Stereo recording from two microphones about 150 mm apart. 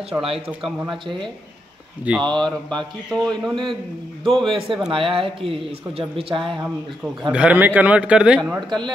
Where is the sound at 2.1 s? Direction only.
10° right (ahead or behind).